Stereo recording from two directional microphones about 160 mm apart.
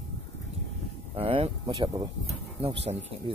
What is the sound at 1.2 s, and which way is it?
Speech, 35° right (ahead or behind).